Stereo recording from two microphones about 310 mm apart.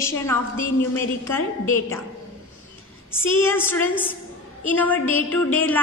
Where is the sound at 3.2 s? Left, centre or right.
Centre.